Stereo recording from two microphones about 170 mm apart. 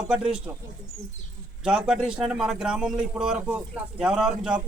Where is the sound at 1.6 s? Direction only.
5° right (ahead or behind).